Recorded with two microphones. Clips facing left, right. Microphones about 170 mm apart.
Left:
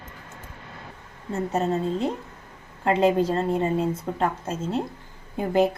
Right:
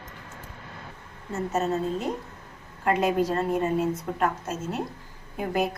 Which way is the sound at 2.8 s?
25° left (ahead or behind).